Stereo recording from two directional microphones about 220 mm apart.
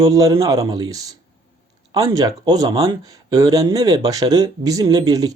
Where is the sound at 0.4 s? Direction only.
15° right (ahead or behind).